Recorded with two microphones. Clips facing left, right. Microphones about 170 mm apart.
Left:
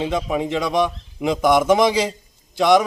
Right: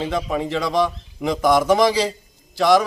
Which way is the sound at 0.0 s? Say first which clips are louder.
Left 1 dB; 15° left (ahead or behind).